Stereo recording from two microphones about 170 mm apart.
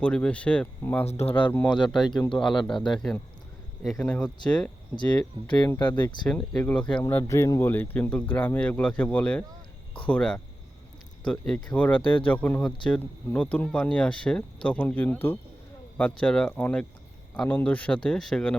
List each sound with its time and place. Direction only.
0.0 s speech: 5° left (ahead or behind)
12.0 s speech: 30° left (ahead or behind)
12.3 s speech: 10° left (ahead or behind)